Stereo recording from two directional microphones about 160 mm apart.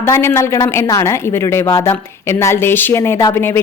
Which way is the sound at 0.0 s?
15° left (ahead or behind).